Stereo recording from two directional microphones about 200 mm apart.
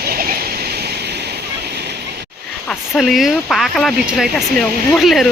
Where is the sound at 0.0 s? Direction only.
45° right (ahead or behind).